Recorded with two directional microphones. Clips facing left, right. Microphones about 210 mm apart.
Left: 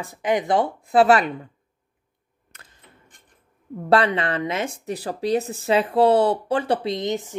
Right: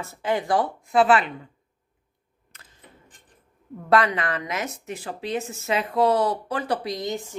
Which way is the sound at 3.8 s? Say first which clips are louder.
Left 2 dB; 30° left (ahead or behind).